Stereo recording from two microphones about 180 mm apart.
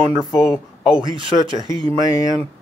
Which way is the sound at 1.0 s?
25° right (ahead or behind).